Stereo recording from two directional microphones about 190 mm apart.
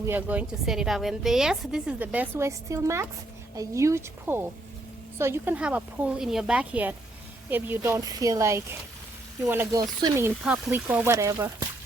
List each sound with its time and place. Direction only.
0.0 s a woman's voice: 10° right (ahead or behind)